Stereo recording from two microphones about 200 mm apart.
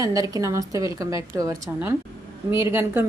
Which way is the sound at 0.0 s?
15° right (ahead or behind).